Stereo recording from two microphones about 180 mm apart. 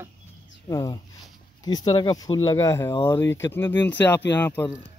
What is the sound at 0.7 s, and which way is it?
Speech, 15° left (ahead or behind).